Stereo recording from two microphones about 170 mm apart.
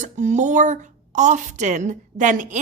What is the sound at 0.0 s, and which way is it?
A woman's voice, 45° right (ahead or behind).